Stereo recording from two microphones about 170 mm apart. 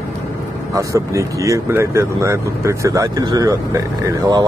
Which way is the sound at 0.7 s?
20° right (ahead or behind).